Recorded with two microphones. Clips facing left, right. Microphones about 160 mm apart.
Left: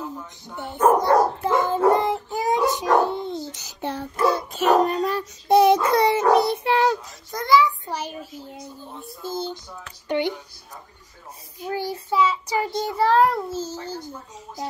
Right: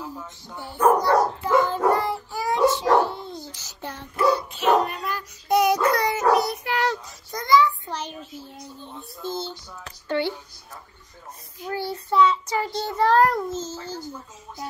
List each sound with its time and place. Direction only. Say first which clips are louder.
0.6 s dog: left 1 dB; 20° left (ahead or behind)
3.1 s babbling: left 6 dB; 20° left (ahead or behind)
3.9 s child singing: even; 40° left (ahead or behind)
7.2 s a sound: left 1 dB; centre (ahead or behind)
11.6 s child singing: left 2 dB; 15° left (ahead or behind)